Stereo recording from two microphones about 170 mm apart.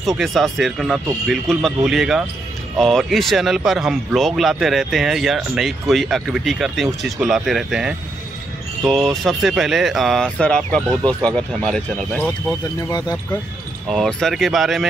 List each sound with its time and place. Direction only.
0.2 s speech: centre (ahead or behind)
12.9 s speech: 20° left (ahead or behind)
13.8 s speech: centre (ahead or behind)